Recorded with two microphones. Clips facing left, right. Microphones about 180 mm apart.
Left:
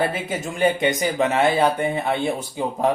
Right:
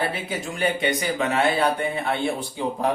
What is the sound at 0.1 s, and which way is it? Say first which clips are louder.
Speech: left 2 dB; 45° left (ahead or behind).